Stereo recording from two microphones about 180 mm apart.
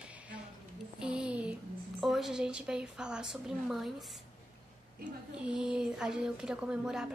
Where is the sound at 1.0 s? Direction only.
5° right (ahead or behind).